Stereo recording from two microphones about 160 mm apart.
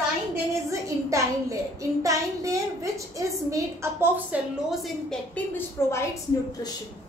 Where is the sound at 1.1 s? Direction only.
20° right (ahead or behind).